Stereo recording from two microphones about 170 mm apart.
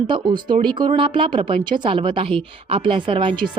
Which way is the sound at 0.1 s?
25° right (ahead or behind).